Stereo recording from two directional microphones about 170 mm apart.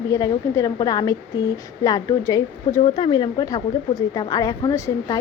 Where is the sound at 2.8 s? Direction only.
30° left (ahead or behind).